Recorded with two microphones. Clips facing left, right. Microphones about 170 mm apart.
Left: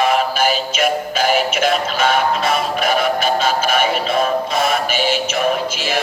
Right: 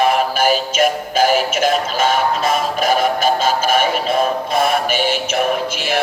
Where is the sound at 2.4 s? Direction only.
45° right (ahead or behind).